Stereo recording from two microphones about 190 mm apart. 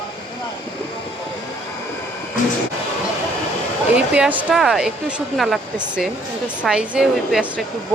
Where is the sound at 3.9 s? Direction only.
5° right (ahead or behind).